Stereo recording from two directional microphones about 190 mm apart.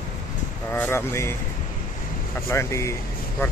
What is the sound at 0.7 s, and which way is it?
Speech, 10° left (ahead or behind).